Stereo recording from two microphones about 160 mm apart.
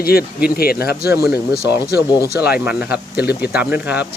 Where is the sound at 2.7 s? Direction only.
10° right (ahead or behind).